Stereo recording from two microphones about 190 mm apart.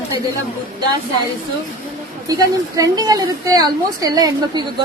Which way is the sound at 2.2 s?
20° right (ahead or behind).